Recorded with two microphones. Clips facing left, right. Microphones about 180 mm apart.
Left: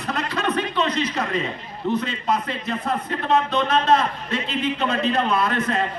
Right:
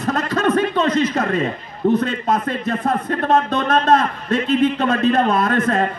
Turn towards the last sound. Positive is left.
turn(degrees=-50)  # may be behind; listen again after turning